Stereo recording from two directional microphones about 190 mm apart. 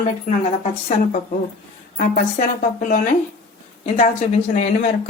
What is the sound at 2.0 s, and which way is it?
A woman's voice, 45° left (ahead or behind).